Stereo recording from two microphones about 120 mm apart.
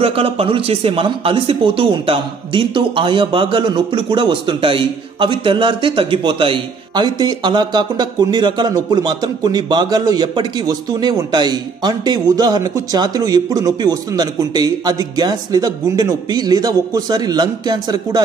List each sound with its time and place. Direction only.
0.0 s speech: 55° right (ahead or behind); by 18.2 s 35° right (ahead or behind)